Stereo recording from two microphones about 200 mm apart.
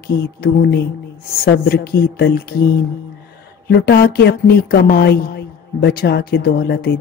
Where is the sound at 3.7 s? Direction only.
55° left (ahead or behind).